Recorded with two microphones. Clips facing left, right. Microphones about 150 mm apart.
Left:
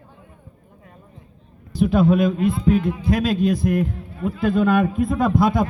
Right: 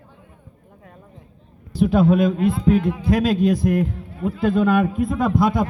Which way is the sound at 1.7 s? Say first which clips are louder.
Right 1 dB; 35° right (ahead or behind).